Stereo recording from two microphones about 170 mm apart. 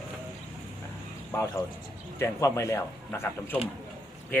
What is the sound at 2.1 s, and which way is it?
Speech, 15° left (ahead or behind).